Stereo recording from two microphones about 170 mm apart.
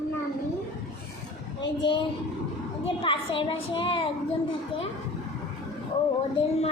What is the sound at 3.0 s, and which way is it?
A child's voice, 30° left (ahead or behind).